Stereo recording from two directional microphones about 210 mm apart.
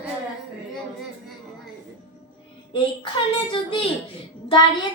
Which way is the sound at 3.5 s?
25° left (ahead or behind).